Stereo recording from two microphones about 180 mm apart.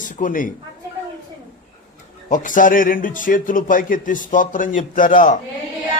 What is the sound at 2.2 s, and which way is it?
A man's voice, 45° left (ahead or behind).